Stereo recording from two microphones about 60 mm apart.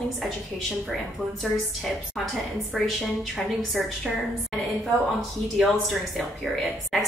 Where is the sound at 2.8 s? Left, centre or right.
Centre.